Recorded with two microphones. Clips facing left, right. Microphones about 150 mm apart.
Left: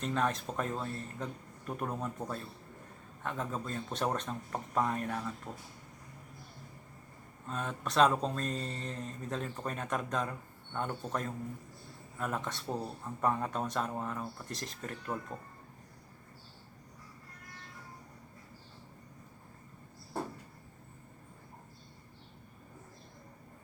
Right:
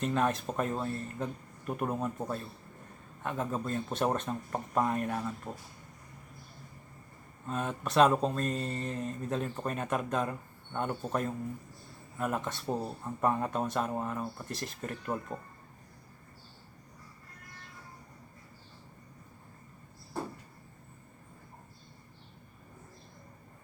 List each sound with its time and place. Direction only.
0.0 s speech: 5° right (ahead or behind)
7.4 s speech: 5° right (ahead or behind)